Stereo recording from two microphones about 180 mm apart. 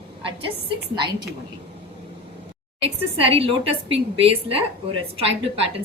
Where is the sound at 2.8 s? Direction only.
30° right (ahead or behind).